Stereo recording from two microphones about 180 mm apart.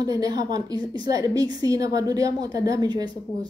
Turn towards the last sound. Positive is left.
turn(degrees=-20)  # may be behind; listen again after turning